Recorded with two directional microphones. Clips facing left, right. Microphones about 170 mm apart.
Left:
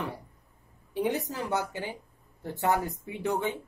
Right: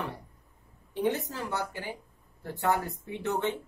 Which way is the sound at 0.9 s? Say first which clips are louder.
Even; 15° left (ahead or behind).